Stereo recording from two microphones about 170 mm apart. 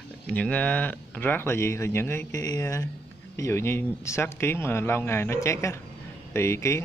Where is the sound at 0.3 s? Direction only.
10° left (ahead or behind).